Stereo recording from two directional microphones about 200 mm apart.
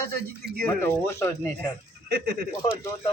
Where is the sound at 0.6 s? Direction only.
10° left (ahead or behind).